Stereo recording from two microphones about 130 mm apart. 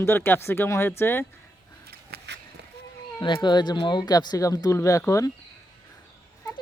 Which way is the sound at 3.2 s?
35° left (ahead or behind).